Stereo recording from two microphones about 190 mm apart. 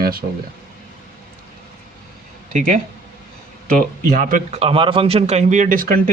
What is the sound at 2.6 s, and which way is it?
Speech, 40° right (ahead or behind).